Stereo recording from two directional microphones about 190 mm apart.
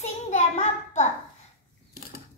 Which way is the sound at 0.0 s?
35° left (ahead or behind).